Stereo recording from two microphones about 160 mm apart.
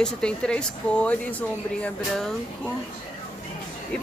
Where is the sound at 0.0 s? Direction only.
5° left (ahead or behind).